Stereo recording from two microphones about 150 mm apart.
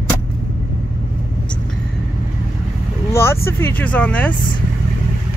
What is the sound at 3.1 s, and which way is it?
Speech, 15° left (ahead or behind).